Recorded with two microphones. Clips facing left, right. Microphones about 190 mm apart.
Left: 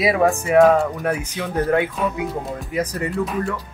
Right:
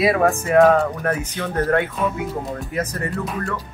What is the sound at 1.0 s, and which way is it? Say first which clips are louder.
Speech: even; 10° left (ahead or behind).